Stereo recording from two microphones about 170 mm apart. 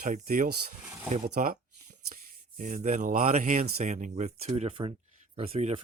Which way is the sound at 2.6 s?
45° right (ahead or behind).